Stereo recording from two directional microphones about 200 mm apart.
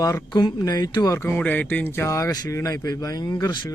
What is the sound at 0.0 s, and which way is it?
Speech, 15° left (ahead or behind).